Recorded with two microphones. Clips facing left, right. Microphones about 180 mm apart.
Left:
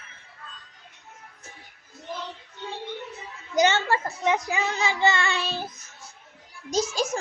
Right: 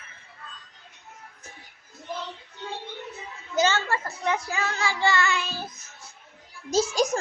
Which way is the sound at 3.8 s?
30° left (ahead or behind).